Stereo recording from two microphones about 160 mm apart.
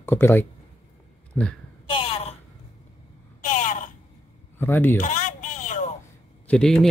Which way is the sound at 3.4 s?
55° left (ahead or behind).